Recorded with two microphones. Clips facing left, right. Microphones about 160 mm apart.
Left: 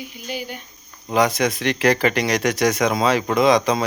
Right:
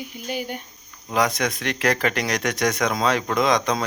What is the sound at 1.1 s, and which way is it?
Speech, centre (ahead or behind).